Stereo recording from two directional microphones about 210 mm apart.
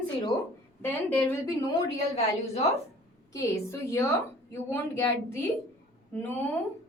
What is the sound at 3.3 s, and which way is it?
A woman's voice, 15° left (ahead or behind).